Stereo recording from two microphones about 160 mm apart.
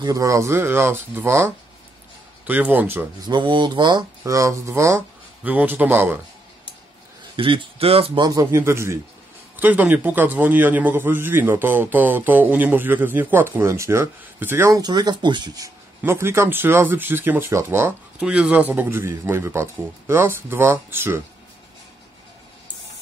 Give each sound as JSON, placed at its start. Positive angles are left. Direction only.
{"t": 0.0, "sound": "a man's voice", "side_deg": -20}
{"t": 3.3, "sound": "speech", "side_deg": -30}
{"t": 7.3, "sound": "a man's voice", "side_deg": -35}
{"t": 16.0, "sound": "a man's voice", "side_deg": -15}